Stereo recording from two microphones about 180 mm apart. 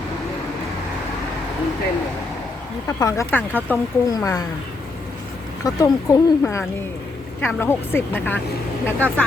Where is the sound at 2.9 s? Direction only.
20° left (ahead or behind).